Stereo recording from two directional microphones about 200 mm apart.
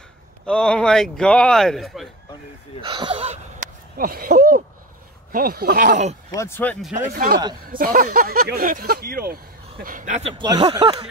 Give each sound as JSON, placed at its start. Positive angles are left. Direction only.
{"t": 0.5, "sound": "speech", "side_deg": 5}
{"t": 2.8, "sound": "speech", "side_deg": -25}
{"t": 4.0, "sound": "speech", "side_deg": -45}
{"t": 6.3, "sound": "speech", "side_deg": 15}
{"t": 7.6, "sound": "speech", "side_deg": -45}
{"t": 10.3, "sound": "speech", "side_deg": -25}